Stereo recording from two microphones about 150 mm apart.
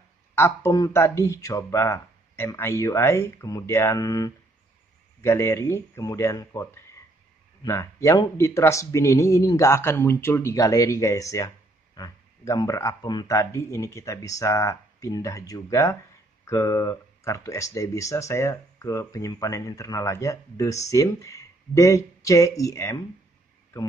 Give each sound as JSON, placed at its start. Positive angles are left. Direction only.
{"t": 0.4, "sound": "speech", "side_deg": 20}